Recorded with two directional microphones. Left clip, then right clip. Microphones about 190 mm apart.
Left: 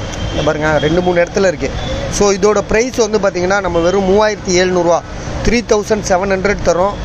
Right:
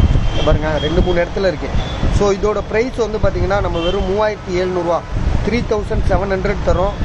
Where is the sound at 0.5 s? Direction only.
15° left (ahead or behind).